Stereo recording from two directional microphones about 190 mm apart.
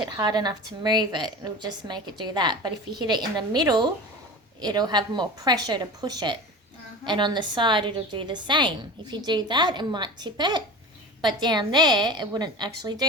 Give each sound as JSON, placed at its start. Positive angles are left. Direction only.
{"t": 0.0, "sound": "a woman's voice", "side_deg": -20}